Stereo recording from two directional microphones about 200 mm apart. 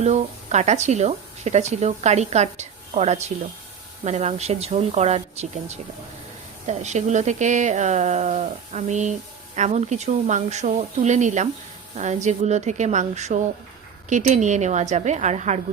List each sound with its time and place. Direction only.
0.0 s speech: 35° right (ahead or behind)